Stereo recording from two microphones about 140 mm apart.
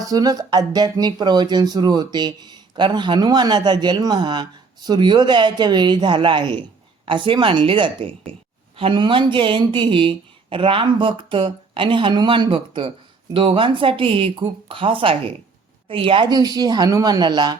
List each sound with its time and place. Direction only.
0.0 s speech: 25° right (ahead or behind)